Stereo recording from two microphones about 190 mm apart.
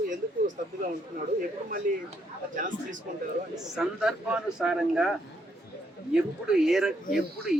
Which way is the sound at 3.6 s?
Centre (ahead or behind).